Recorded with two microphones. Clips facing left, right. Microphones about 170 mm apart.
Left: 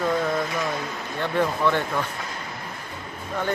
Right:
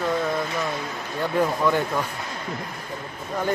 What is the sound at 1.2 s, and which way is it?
Speech, 10° right (ahead or behind).